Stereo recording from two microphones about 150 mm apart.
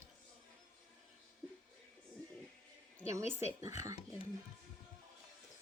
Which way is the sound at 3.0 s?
20° right (ahead or behind).